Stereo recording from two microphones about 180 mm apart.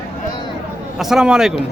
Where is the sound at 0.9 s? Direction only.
5° right (ahead or behind).